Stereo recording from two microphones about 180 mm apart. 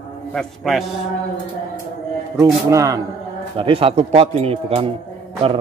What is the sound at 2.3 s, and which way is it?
Speech, 20° right (ahead or behind).